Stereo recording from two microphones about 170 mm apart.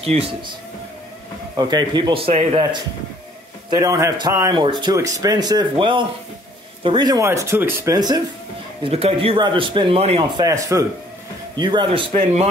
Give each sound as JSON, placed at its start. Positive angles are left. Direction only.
{"t": 0.0, "sound": "a man's voice", "side_deg": -35}
{"t": 1.6, "sound": "speech", "side_deg": -25}
{"t": 3.7, "sound": "speech", "side_deg": -20}
{"t": 8.8, "sound": "a man's voice", "side_deg": -35}
{"t": 10.4, "sound": "a man's voice", "side_deg": -20}